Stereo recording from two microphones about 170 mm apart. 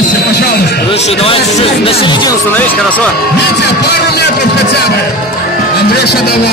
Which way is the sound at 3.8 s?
75° left (ahead or behind).